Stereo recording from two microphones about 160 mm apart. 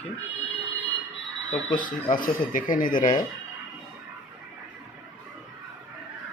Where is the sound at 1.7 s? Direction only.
55° left (ahead or behind).